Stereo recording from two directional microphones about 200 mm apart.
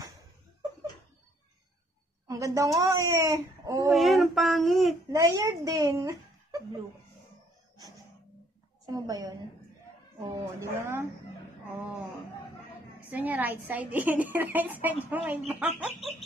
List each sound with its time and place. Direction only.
2.2 s speech: 15° right (ahead or behind)
3.9 s speech: centre (ahead or behind)
5.1 s a child's voice: 15° right (ahead or behind)
8.8 s a woman's voice: 20° right (ahead or behind)
13.1 s a woman's voice: 10° right (ahead or behind)